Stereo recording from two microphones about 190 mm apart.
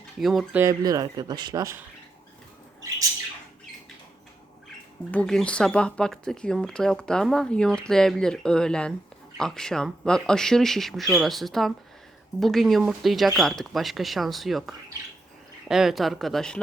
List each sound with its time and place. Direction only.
0.2 s speech: centre (ahead or behind)
0.6 s speech: 20° right (ahead or behind)
5.1 s speech: 5° left (ahead or behind)